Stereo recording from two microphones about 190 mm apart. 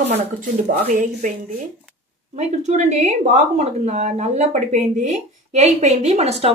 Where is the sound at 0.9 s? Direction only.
40° right (ahead or behind).